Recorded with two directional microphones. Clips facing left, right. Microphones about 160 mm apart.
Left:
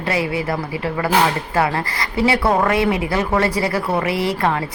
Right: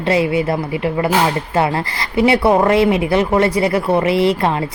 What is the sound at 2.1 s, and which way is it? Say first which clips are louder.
Speech: right 4 dB; 20° right (ahead or behind).